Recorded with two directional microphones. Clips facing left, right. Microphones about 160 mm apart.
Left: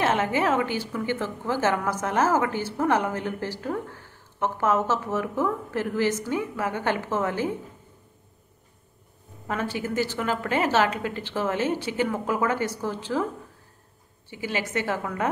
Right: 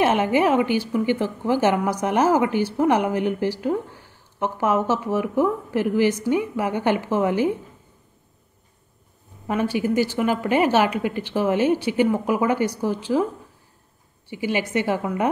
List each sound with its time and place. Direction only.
0.0 s a woman's voice: 15° right (ahead or behind)
9.5 s a woman's voice: 15° right (ahead or behind)
14.3 s a woman's voice: 15° right (ahead or behind)